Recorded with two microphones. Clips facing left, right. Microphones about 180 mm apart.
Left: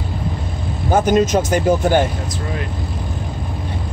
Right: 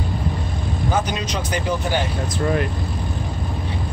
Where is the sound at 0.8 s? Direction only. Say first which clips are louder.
Left 9 dB; 45° left (ahead or behind).